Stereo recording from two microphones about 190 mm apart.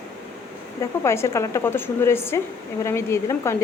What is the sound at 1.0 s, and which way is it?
A woman's voice, 15° left (ahead or behind).